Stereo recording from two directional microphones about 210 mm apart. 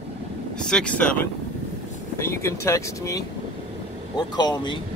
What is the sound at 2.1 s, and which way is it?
Speech, 15° left (ahead or behind).